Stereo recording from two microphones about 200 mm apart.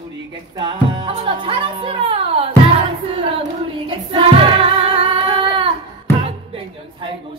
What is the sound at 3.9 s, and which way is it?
Singing, 25° right (ahead or behind).